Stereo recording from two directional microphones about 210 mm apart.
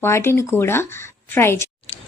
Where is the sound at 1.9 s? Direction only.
30° left (ahead or behind).